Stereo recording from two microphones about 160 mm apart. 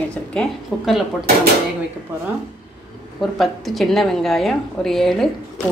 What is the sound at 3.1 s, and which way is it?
Speech, centre (ahead or behind).